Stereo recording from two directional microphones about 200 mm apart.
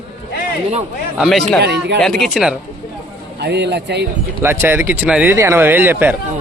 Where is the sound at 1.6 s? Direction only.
55° right (ahead or behind).